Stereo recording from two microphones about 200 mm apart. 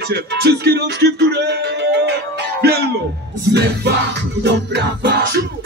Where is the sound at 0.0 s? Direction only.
55° right (ahead or behind).